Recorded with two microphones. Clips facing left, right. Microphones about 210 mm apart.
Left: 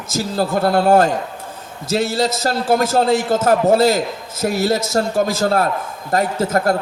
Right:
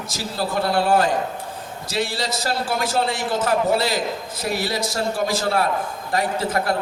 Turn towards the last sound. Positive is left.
turn(degrees=45)  # may be behind; listen again after turning